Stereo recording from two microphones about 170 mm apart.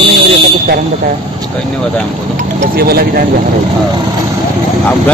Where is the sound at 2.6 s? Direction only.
60° right (ahead or behind).